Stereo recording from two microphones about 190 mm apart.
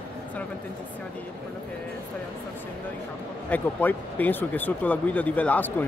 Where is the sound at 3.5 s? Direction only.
10° left (ahead or behind).